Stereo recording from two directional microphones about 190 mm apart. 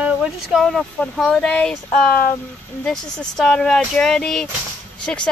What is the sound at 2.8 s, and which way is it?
Speech, 5° left (ahead or behind).